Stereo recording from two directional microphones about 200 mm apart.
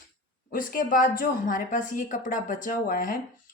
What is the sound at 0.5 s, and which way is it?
Speech, 45° left (ahead or behind).